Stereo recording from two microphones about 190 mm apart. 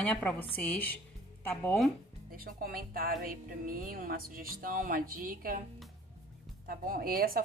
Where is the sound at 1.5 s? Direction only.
5° left (ahead or behind).